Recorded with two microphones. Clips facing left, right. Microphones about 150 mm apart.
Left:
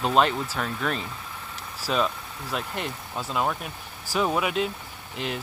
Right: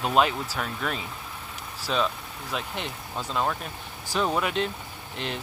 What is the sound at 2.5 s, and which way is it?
Speech, centre (ahead or behind).